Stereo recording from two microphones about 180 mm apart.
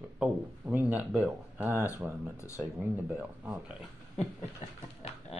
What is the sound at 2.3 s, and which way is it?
Speech, 15° left (ahead or behind).